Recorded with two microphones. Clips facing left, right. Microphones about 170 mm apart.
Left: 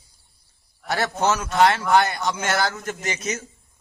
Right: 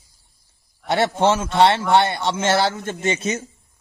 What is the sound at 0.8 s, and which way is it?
A man's voice, 25° right (ahead or behind).